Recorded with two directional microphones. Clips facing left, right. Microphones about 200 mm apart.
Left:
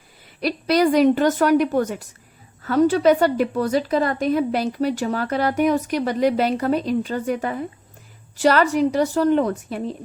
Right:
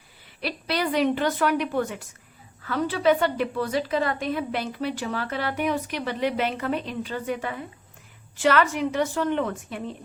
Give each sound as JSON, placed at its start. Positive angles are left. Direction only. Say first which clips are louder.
{"t": 0.3, "sound": "a woman's voice", "louder": "left 9 dB", "side_deg": 40}